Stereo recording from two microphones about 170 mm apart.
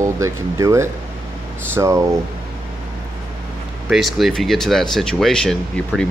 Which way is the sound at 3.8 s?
Centre (ahead or behind).